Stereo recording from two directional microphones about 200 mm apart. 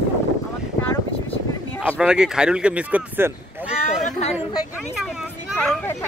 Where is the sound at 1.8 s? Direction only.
5° right (ahead or behind).